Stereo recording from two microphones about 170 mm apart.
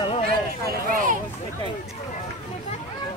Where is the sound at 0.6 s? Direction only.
55° right (ahead or behind).